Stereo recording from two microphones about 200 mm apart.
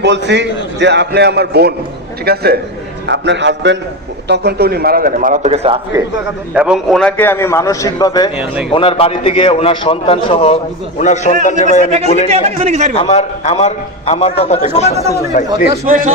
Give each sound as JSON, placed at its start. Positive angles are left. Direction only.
{"t": 0.0, "sound": "a man's voice", "side_deg": -60}
{"t": 3.1, "sound": "a man's voice", "side_deg": -60}
{"t": 6.5, "sound": "a man's voice", "side_deg": -5}
{"t": 12.3, "sound": "speech", "side_deg": -35}
{"t": 12.9, "sound": "a man's voice", "side_deg": 30}